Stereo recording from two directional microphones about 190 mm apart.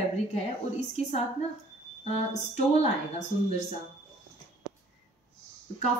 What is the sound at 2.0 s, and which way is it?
A woman's voice, 35° left (ahead or behind).